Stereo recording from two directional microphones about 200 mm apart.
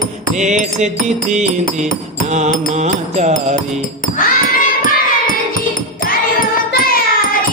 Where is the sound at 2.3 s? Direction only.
35° right (ahead or behind).